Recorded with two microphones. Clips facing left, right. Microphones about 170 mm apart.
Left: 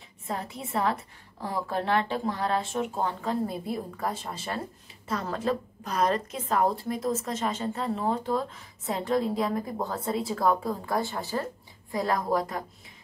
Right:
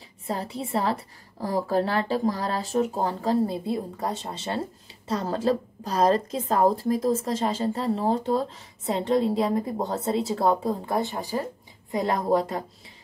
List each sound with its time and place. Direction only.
0.3 s a woman's voice: 30° right (ahead or behind)